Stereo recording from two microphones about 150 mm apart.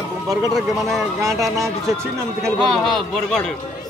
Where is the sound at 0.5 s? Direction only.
Centre (ahead or behind).